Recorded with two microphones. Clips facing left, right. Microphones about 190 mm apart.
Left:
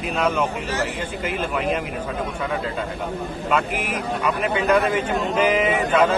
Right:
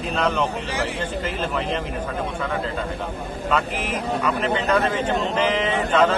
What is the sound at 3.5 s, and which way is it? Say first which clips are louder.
A man's voice: left 1 dB; 10° left (ahead or behind).